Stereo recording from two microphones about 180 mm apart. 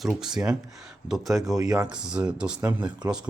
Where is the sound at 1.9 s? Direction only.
5° right (ahead or behind).